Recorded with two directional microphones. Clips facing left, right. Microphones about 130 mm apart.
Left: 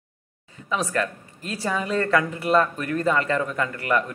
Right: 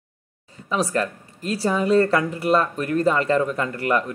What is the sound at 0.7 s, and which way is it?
Speech, 35° right (ahead or behind).